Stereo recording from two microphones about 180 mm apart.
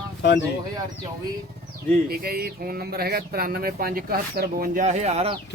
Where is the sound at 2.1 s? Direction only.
60° right (ahead or behind); by 5.4 s 35° right (ahead or behind).